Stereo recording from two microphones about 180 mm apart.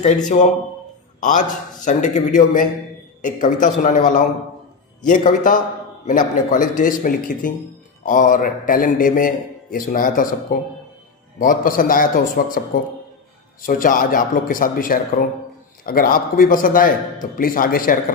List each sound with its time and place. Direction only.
0.0 s a man's voice: 40° left (ahead or behind)
1.9 s speech: 45° left (ahead or behind)